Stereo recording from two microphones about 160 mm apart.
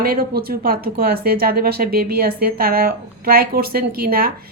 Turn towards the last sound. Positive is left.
turn(degrees=-65)  # may be behind; listen again after turning